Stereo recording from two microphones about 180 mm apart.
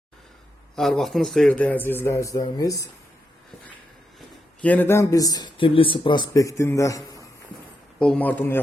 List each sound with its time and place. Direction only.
0.8 s a man's voice: centre (ahead or behind); by 2.9 s 20° left (ahead or behind)
4.6 s speech: 10° left (ahead or behind)
7.9 s a man's voice: 5° left (ahead or behind)